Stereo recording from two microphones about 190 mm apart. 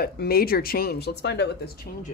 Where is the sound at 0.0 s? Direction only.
55° left (ahead or behind).